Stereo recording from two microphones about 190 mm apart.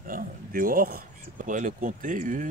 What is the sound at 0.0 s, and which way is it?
Speech, 45° right (ahead or behind).